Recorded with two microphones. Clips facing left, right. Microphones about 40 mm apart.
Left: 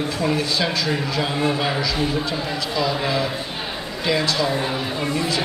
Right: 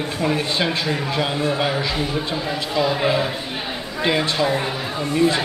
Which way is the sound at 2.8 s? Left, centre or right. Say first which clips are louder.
Right 3 dB; right.